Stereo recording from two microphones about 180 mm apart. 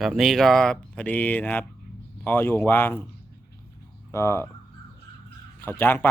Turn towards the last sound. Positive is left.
turn(degrees=10)  # may be behind; listen again after turning